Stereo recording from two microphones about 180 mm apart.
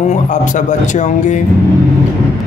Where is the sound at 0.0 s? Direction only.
40° left (ahead or behind).